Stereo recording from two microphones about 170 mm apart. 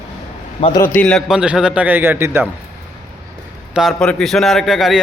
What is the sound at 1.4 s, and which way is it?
A man's voice, 5° right (ahead or behind).